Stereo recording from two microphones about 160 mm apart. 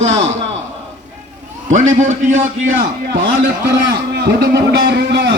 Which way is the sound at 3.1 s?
80° right.